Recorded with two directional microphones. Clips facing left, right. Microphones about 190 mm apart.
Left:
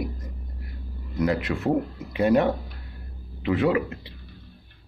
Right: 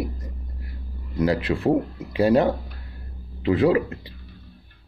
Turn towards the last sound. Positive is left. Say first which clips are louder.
# right 4 dB
turn(degrees=-35)  # may be behind; listen again after turning